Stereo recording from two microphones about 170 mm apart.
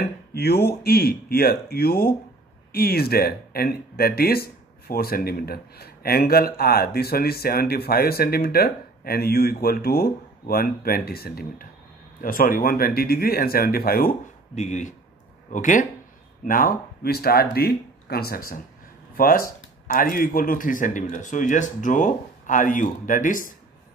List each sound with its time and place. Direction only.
0.3 s speech: 65° left (ahead or behind)
14.5 s speech: 45° left (ahead or behind)